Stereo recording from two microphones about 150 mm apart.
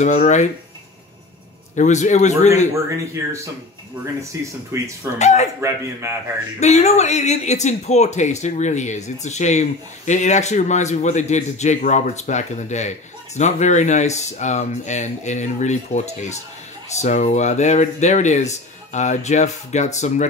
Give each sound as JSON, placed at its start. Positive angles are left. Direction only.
{"t": 0.0, "sound": "speech", "side_deg": 50}
{"t": 1.8, "sound": "speech", "side_deg": 50}
{"t": 3.2, "sound": "speech", "side_deg": -20}
{"t": 5.2, "sound": "speech", "side_deg": 50}
{"t": 5.6, "sound": "a man's voice", "side_deg": -20}
{"t": 6.6, "sound": "speech", "side_deg": 50}